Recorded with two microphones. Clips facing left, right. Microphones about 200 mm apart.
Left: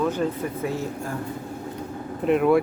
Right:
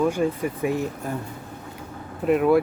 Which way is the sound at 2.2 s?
Centre (ahead or behind).